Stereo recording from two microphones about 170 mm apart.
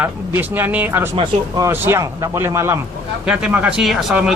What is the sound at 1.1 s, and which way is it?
Speech, 30° right (ahead or behind).